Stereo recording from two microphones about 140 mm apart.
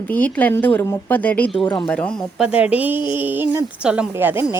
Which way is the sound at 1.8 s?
10° left (ahead or behind).